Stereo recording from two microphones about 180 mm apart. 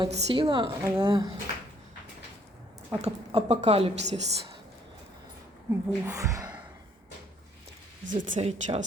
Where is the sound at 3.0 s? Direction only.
35° right (ahead or behind).